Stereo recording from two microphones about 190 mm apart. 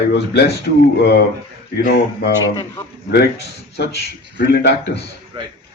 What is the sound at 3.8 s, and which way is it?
A man's voice, 55° left (ahead or behind).